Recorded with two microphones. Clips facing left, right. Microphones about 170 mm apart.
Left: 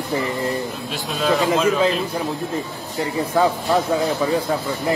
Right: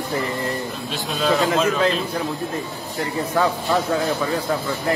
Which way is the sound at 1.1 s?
Centre (ahead or behind).